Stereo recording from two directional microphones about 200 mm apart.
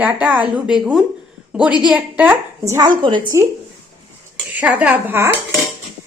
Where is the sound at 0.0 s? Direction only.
5° right (ahead or behind); by 3.4 s 25° right (ahead or behind).